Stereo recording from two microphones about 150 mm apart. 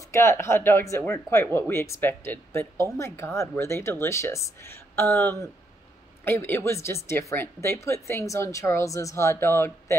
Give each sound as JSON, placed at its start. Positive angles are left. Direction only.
{"t": 0.1, "sound": "speech", "side_deg": 15}